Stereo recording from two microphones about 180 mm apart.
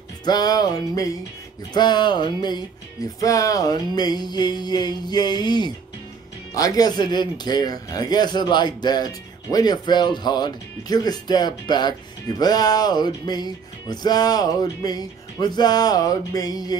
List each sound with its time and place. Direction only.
0.2 s a man's voice: 25° left (ahead or behind)